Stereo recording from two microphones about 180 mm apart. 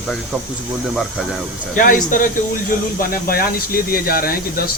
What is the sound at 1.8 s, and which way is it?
Speech, 50° left (ahead or behind).